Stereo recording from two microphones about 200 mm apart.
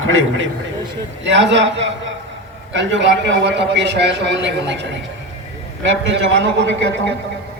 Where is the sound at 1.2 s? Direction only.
65° right (ahead or behind).